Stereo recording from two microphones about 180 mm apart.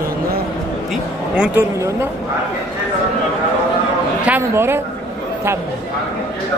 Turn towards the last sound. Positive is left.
turn(degrees=-15)  # may be behind; listen again after turning